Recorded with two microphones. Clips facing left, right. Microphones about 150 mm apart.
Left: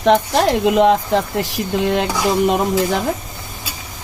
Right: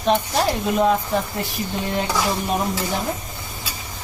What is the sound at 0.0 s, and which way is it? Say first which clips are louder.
Speech: left 5 dB; 90° left.